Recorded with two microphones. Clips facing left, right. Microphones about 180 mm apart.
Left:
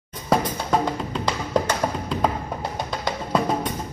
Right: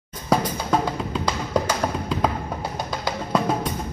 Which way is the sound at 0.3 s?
Centre (ahead or behind).